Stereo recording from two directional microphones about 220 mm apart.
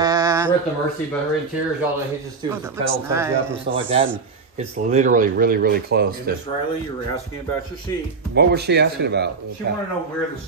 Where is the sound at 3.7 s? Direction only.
25° right (ahead or behind); by 6.3 s 45° right (ahead or behind).